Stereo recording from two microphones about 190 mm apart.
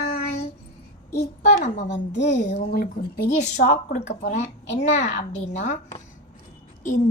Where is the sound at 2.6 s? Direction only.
50° left (ahead or behind).